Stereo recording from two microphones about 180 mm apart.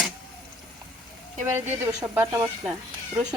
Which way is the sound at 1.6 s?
15° right (ahead or behind).